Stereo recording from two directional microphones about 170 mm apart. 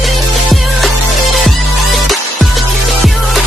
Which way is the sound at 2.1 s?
Centre (ahead or behind).